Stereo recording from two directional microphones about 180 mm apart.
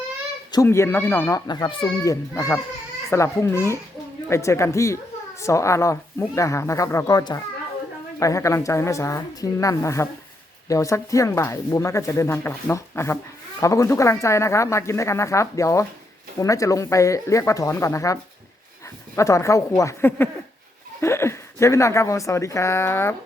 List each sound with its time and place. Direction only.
0.5 s speech: 15° left (ahead or behind)
1.5 s a child's voice: 25° left (ahead or behind)